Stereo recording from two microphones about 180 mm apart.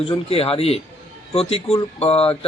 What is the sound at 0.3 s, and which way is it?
A man's voice, 35° left (ahead or behind).